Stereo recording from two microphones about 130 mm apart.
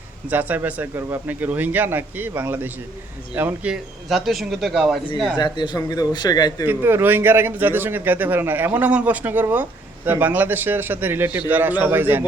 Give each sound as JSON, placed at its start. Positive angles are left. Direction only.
{"t": 0.3, "sound": "a man's voice", "side_deg": -10}
{"t": 5.4, "sound": "a man's voice", "side_deg": 35}
{"t": 6.7, "sound": "a man's voice", "side_deg": -15}